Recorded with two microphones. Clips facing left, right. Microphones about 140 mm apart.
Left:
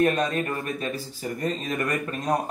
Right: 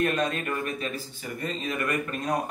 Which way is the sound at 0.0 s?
35° left (ahead or behind).